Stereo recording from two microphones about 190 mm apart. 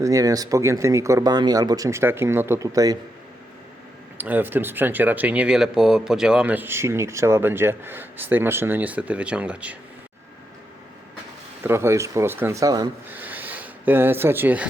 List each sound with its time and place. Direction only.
0.0 s speech: 15° right (ahead or behind)
4.2 s speech: 10° right (ahead or behind)
11.6 s speech: 15° right (ahead or behind)